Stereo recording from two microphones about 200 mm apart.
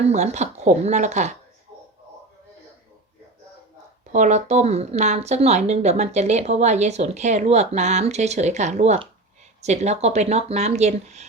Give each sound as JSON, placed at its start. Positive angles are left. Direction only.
{"t": 0.0, "sound": "a woman's voice", "side_deg": -35}
{"t": 4.1, "sound": "a woman's voice", "side_deg": -35}